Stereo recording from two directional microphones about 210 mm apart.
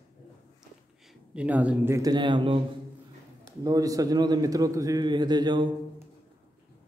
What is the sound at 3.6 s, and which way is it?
A man's voice, 15° right (ahead or behind).